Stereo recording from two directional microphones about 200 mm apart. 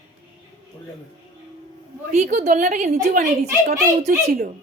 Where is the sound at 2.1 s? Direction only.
35° right (ahead or behind).